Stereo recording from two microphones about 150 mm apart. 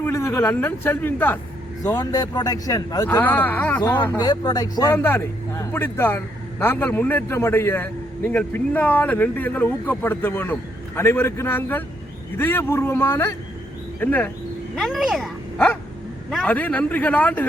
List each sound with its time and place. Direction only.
0.0 s speech: 20° left (ahead or behind)
1.8 s speech: 25° left (ahead or behind)
3.2 s a man's voice: 10° left (ahead or behind)
3.8 s a man's voice: 25° left (ahead or behind)
14.8 s speech: centre (ahead or behind)
15.5 s dog: 10° left (ahead or behind)
16.3 s a man's voice: 5° left (ahead or behind)